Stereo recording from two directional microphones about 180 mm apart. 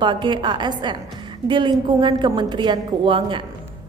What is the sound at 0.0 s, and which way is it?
A woman's voice, 25° right (ahead or behind).